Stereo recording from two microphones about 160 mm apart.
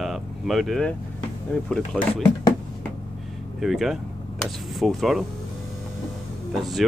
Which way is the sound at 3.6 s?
Centre (ahead or behind).